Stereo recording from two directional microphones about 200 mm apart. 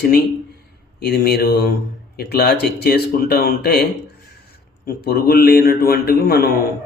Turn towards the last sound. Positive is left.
turn(degrees=50)  # may be behind; listen again after turning